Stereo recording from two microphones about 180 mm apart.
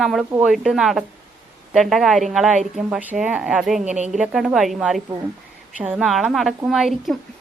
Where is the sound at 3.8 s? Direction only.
40° right (ahead or behind).